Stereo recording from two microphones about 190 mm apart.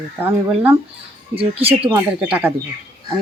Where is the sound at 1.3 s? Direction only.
30° right (ahead or behind).